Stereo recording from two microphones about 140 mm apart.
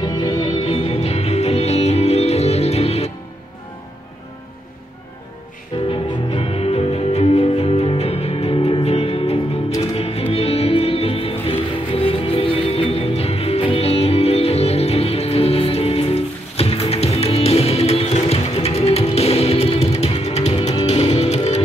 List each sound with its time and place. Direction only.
0.0 s music: 30° left (ahead or behind)
0.6 s music: 45° left (ahead or behind)
5.9 s music: 40° left (ahead or behind)